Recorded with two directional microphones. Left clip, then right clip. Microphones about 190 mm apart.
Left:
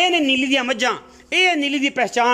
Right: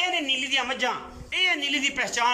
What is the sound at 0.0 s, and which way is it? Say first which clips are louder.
A man's voice: left 8 dB; 60° left (ahead or behind).